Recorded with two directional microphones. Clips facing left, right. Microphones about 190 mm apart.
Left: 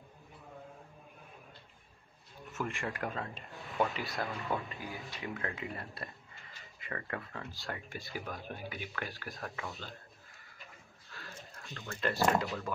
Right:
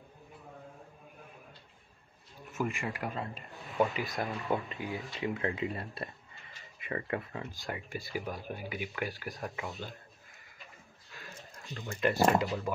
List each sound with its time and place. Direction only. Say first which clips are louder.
2.5 s speech: right 3 dB; 5° right (ahead or behind)
4.0 s speech: right 2 dB; 20° right (ahead or behind)
11.1 s speech: even; 20° right (ahead or behind)